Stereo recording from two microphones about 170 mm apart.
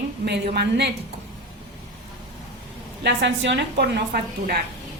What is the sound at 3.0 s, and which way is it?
A woman's voice, 90° right.